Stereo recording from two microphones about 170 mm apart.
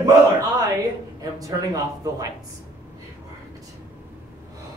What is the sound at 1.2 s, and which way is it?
Speech, 20° right (ahead or behind).